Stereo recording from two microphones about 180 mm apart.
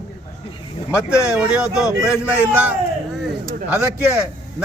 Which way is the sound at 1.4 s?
5° right (ahead or behind).